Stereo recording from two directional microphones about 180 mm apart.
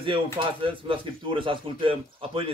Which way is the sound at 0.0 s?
30° right (ahead or behind).